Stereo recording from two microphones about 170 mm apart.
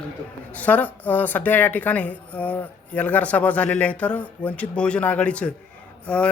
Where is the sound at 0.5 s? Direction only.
10° left (ahead or behind).